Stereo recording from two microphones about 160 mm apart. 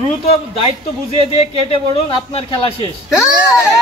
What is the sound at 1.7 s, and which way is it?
Speech, 35° left (ahead or behind).